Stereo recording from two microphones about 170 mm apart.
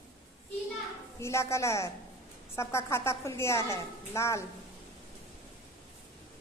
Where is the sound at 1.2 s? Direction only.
15° left (ahead or behind).